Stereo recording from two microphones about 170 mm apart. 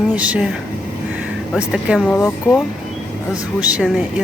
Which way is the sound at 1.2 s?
5° right (ahead or behind).